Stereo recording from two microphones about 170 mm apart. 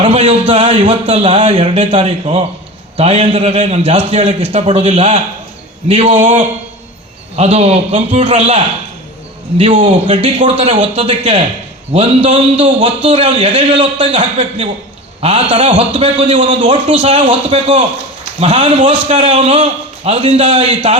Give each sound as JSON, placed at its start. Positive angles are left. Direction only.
{"t": 0.0, "sound": "a man's voice", "side_deg": -35}